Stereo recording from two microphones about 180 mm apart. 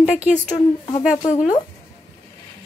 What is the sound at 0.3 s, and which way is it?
Speech, 40° left (ahead or behind).